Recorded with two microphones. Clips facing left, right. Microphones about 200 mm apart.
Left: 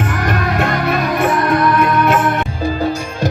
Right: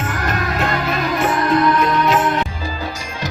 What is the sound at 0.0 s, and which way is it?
Music, 60° left (ahead or behind).